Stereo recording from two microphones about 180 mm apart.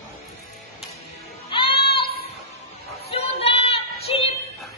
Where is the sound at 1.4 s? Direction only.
30° left (ahead or behind).